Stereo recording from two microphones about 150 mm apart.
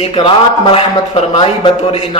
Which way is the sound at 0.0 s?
40° left (ahead or behind).